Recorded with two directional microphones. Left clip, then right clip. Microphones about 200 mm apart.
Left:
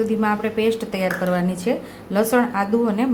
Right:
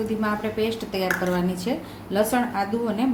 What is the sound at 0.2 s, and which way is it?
Speech, 25° left (ahead or behind).